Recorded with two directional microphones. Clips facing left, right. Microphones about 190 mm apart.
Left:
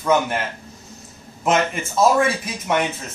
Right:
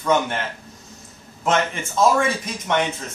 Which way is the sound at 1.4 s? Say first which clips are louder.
Left 2 dB; 5° left (ahead or behind).